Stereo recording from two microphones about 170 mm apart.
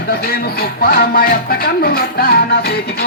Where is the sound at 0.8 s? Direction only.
60° left (ahead or behind).